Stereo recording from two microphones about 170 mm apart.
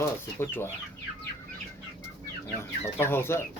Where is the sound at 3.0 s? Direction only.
15° left (ahead or behind).